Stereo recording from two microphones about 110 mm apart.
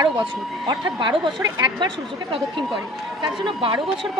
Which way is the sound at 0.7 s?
45° right (ahead or behind).